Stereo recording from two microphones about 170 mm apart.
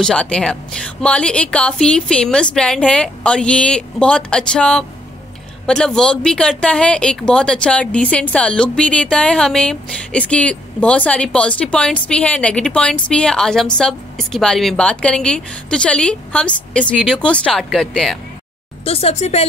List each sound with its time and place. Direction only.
0.0 s speech: 5° left (ahead or behind)
18.9 s speech: 35° left (ahead or behind)